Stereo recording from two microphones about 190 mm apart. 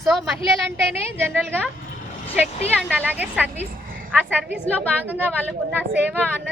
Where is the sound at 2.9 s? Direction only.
10° right (ahead or behind).